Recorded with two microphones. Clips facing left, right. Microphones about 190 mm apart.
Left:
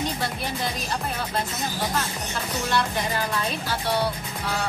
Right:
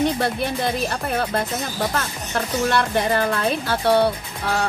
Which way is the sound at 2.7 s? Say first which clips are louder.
Right 4 dB; 60° right (ahead or behind).